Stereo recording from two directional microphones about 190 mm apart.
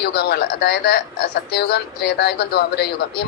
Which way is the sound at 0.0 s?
60° left (ahead or behind).